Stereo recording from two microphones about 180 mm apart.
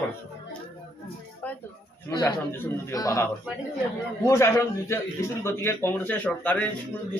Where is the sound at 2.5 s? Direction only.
15° left (ahead or behind).